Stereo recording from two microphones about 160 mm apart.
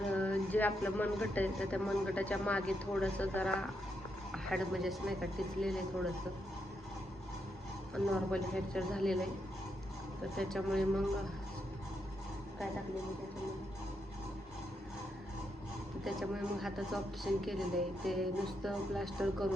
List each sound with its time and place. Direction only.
0.1 s speech: 10° left (ahead or behind)
7.9 s speech: centre (ahead or behind)
10.3 s speech: centre (ahead or behind)
16.0 s speech: centre (ahead or behind)